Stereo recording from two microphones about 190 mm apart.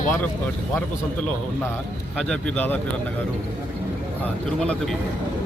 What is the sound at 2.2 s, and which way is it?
Speech, 5° left (ahead or behind).